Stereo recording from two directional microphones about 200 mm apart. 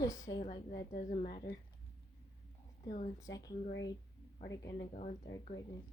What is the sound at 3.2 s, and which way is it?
A child's voice, 20° left (ahead or behind).